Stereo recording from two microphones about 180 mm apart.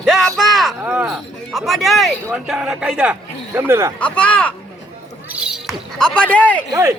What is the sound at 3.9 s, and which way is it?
Speech, 5° left (ahead or behind).